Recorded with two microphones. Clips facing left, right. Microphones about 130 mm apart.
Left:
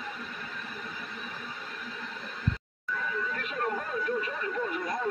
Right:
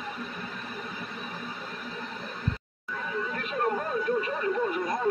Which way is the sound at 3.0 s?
20° right (ahead or behind).